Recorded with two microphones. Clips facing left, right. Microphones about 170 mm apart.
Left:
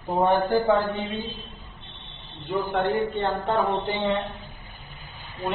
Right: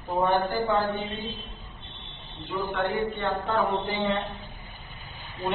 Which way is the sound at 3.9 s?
20° left (ahead or behind).